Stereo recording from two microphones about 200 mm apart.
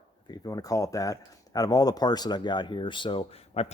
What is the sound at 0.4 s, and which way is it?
Speech, 15° left (ahead or behind).